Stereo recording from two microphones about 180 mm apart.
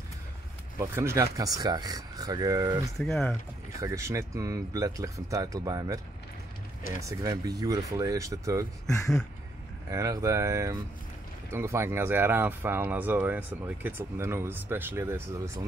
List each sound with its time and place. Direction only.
0.7 s speech: 15° right (ahead or behind)
3.0 s speech: 5° left (ahead or behind)
3.8 s speech: 15° right (ahead or behind)
7.0 s speech: 20° right (ahead or behind)
8.8 s speech: 15° left (ahead or behind)
9.8 s speech: 15° right (ahead or behind)